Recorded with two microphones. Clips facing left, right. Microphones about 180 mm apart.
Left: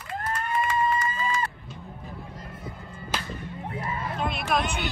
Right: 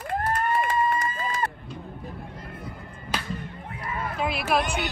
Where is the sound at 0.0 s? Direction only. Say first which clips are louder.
Right 5 dB; 50° right (ahead or behind).